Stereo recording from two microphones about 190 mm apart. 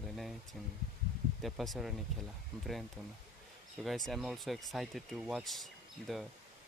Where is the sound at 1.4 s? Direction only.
Centre (ahead or behind).